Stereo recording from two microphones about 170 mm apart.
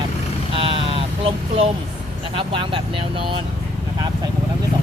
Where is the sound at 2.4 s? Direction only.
30° right (ahead or behind).